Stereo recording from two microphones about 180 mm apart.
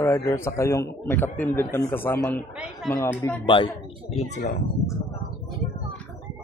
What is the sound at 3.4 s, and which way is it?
Speech, 25° left (ahead or behind).